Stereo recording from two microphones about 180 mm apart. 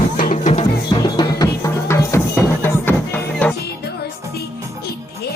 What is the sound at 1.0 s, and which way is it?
Music, 25° left (ahead or behind).